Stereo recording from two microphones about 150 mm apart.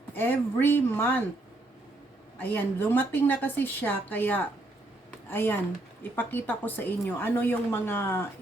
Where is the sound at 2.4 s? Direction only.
15° left (ahead or behind).